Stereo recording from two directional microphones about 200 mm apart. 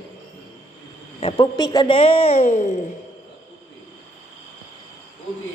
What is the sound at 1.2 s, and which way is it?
A woman's voice, 25° left (ahead or behind).